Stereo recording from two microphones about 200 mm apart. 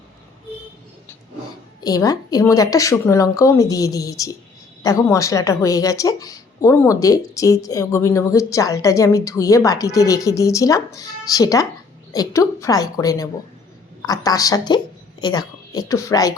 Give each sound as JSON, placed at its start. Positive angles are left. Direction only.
{"t": 1.8, "sound": "a woman's voice", "side_deg": 20}